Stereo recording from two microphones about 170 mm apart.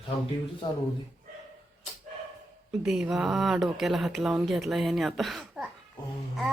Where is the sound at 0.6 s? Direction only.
30° left (ahead or behind).